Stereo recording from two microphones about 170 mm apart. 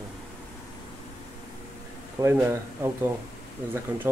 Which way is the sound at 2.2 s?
15° right (ahead or behind).